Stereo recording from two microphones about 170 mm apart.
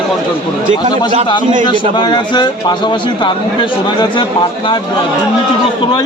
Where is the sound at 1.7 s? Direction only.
30° left (ahead or behind).